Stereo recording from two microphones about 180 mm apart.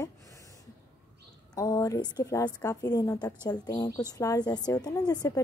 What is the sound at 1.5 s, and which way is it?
A woman's voice, 20° left (ahead or behind).